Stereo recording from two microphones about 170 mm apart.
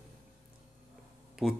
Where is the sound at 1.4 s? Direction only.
Centre (ahead or behind).